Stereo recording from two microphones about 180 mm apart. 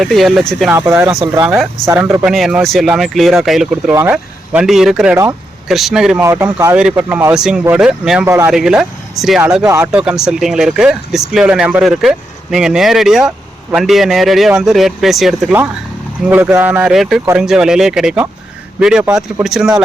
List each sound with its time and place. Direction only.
0.0 s speech: centre (ahead or behind)
0.8 s speech: 10° right (ahead or behind)
6.2 s speech: 15° right (ahead or behind)
8.3 s speech: 15° right (ahead or behind)
8.5 s speech: centre (ahead or behind)